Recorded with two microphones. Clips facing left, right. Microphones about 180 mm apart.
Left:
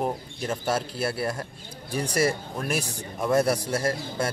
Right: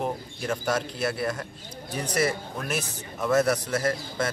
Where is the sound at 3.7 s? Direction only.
30° left (ahead or behind).